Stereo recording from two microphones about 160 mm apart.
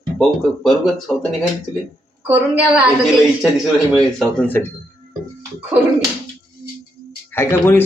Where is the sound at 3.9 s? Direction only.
5° left (ahead or behind).